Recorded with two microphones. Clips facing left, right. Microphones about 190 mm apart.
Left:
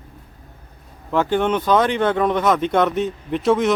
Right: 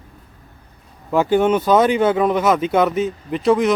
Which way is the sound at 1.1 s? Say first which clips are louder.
Right 3 dB; 10° right (ahead or behind).